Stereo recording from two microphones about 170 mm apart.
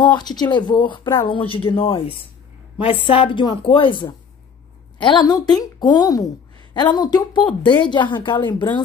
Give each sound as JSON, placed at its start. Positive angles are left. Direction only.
{"t": 0.0, "sound": "a woman's voice", "side_deg": 25}